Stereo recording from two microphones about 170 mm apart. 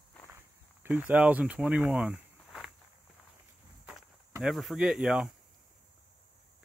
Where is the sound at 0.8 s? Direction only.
10° right (ahead or behind).